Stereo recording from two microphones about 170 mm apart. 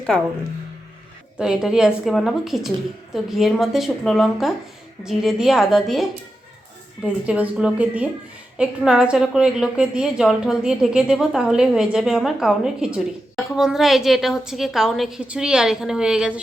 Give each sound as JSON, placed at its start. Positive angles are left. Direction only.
{"t": 1.4, "sound": "a woman's voice", "side_deg": -5}